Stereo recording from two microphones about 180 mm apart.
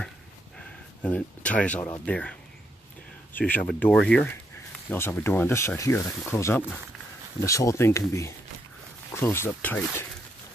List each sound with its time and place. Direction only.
1.0 s speech: 5° left (ahead or behind)
3.3 s speech: 10° left (ahead or behind)